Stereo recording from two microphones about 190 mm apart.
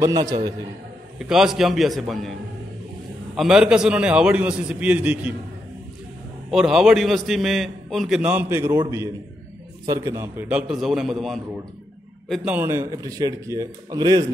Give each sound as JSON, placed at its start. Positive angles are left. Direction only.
{"t": 0.0, "sound": "a man's voice", "side_deg": -20}
{"t": 1.2, "sound": "a man's voice", "side_deg": 0}
{"t": 3.3, "sound": "a man's voice", "side_deg": -5}
{"t": 6.5, "sound": "a man's voice", "side_deg": 0}
{"t": 12.4, "sound": "a man's voice", "side_deg": -10}